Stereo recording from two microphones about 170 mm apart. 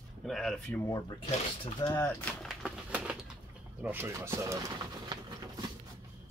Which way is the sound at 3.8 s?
15° right (ahead or behind).